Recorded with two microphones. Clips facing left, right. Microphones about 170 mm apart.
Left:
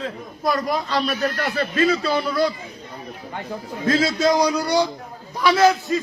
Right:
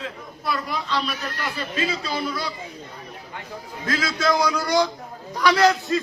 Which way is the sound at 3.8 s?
25° left (ahead or behind).